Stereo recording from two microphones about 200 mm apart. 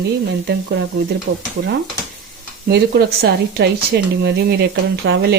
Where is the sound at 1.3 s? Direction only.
70° right (ahead or behind).